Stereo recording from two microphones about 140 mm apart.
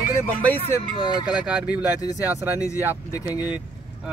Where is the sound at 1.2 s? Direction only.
10° right (ahead or behind).